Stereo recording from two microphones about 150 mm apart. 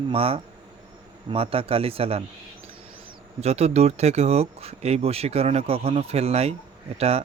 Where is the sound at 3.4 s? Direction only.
45° right (ahead or behind).